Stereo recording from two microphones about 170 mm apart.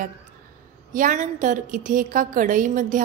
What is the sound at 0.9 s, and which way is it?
A woman's voice, 50° right (ahead or behind).